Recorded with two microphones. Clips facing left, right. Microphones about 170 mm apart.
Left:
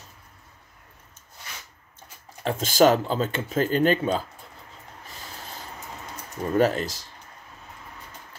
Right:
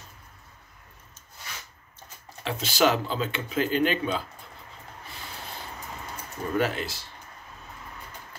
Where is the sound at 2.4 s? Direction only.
45° left (ahead or behind).